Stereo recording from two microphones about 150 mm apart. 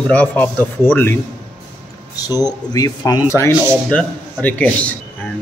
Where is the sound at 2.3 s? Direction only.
25° left (ahead or behind).